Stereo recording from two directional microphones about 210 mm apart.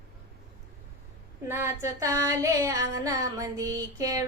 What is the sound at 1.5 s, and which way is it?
Child singing, 15° right (ahead or behind).